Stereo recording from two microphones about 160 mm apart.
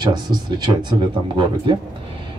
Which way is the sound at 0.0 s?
25° right (ahead or behind).